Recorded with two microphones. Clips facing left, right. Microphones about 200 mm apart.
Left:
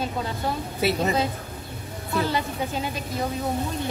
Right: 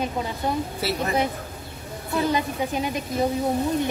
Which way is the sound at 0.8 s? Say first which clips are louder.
Left 4 dB; 20° left (ahead or behind).